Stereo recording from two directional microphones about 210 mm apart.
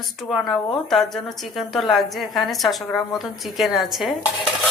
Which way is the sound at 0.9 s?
Centre (ahead or behind).